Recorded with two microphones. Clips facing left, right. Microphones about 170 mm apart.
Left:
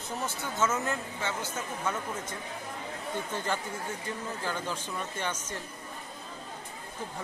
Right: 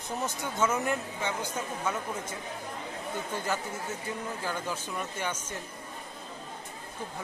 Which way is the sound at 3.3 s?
10° right (ahead or behind).